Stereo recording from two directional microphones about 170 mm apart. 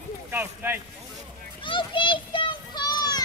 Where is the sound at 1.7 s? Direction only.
30° left (ahead or behind).